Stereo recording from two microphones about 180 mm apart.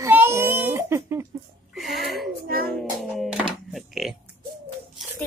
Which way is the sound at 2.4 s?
55° right (ahead or behind).